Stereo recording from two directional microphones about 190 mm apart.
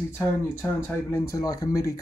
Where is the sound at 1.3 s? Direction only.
20° left (ahead or behind).